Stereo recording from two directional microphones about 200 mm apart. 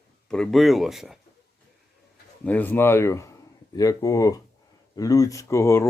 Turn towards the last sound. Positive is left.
turn(degrees=15)  # may be behind; listen again after turning